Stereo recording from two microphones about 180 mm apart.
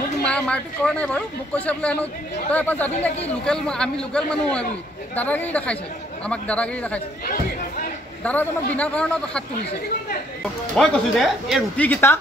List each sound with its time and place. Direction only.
0.2 s a woman's voice: 5° left (ahead or behind)
8.2 s a woman's voice: 10° left (ahead or behind)
10.4 s a woman's voice: centre (ahead or behind)